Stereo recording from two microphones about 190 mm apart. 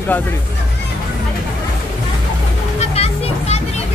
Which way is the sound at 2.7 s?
35° left (ahead or behind).